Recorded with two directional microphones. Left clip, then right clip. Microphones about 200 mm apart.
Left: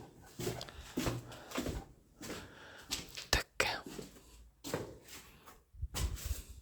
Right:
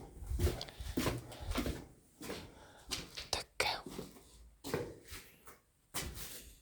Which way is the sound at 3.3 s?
45° left (ahead or behind).